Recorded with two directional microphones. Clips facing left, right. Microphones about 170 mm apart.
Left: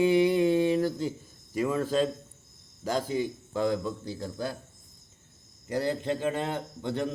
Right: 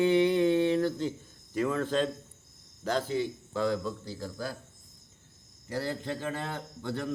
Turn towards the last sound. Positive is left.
turn(degrees=20)  # may be behind; listen again after turning